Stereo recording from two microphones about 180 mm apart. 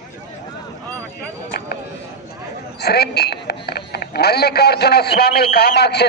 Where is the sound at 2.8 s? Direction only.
65° left (ahead or behind).